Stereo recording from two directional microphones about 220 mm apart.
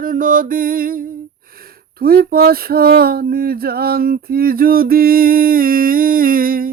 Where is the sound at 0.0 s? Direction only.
40° right (ahead or behind).